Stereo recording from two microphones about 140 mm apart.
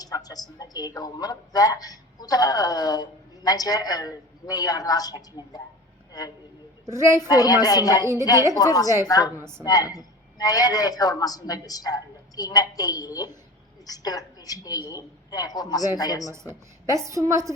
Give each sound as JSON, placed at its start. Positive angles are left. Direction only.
{"t": 0.0, "sound": "a woman's voice", "side_deg": 25}
{"t": 6.8, "sound": "a woman's voice", "side_deg": -20}
{"t": 7.3, "sound": "a woman's voice", "side_deg": 25}
{"t": 8.0, "sound": "a woman's voice", "side_deg": -20}
{"t": 8.5, "sound": "a woman's voice", "side_deg": 25}
{"t": 9.4, "sound": "a woman's voice", "side_deg": -20}
{"t": 9.6, "sound": "a woman's voice", "side_deg": 25}
{"t": 16.8, "sound": "a woman's voice", "side_deg": -20}